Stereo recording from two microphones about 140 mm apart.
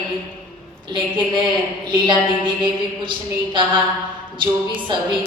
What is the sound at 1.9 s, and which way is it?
A woman's voice, 35° right (ahead or behind).